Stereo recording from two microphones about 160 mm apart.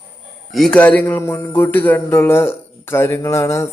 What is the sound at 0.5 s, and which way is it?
Speech, 5° left (ahead or behind).